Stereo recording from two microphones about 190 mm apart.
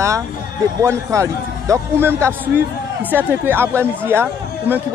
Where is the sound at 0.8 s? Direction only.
15° right (ahead or behind).